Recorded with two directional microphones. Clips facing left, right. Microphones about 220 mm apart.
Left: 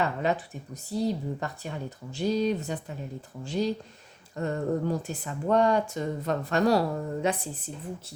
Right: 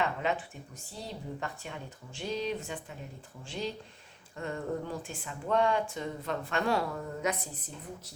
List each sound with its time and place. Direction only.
0.0 s speech: 40° left (ahead or behind)